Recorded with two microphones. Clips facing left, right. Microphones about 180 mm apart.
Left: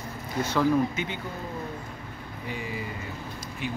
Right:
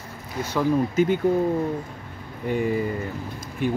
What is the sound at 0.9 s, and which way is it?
Speech, 50° right (ahead or behind).